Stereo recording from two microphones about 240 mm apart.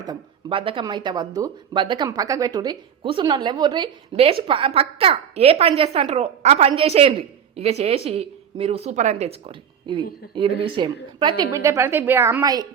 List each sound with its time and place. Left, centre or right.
0.0 s speech: centre